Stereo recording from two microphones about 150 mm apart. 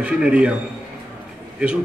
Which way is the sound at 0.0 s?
5° right (ahead or behind).